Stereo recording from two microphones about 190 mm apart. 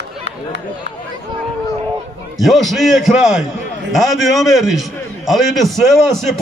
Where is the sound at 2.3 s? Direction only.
Centre (ahead or behind).